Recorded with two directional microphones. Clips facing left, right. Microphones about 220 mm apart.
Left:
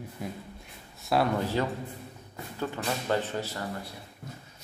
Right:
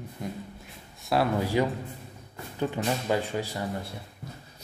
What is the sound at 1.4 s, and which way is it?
Speech, 15° right (ahead or behind).